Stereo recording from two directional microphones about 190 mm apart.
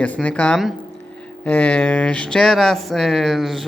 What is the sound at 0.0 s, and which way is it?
Speech, 5° left (ahead or behind).